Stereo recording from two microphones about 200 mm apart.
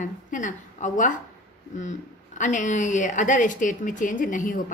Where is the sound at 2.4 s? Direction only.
40° left (ahead or behind).